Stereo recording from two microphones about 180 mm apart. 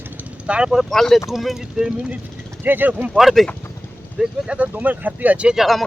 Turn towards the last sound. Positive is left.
turn(degrees=0)  # may be behind; listen again after turning